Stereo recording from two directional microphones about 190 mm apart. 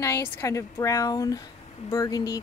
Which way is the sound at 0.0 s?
15° left (ahead or behind).